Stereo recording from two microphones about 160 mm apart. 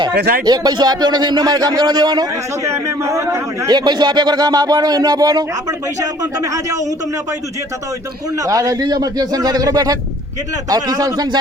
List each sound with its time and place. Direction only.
0.1 s speech: 70° right (ahead or behind)
0.4 s speech: 25° right (ahead or behind)
8.4 s speech: 20° right (ahead or behind)